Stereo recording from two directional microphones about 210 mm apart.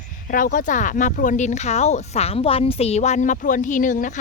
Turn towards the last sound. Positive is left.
turn(degrees=40)  # may be behind; listen again after turning